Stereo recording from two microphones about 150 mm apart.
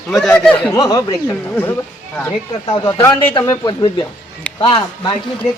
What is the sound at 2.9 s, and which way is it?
A man's voice, 20° left (ahead or behind).